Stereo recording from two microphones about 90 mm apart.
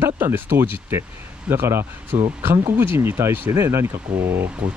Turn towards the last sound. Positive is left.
turn(degrees=-25)  # may be behind; listen again after turning